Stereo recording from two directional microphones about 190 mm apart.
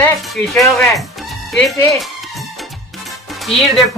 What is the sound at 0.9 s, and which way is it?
Music, centre (ahead or behind).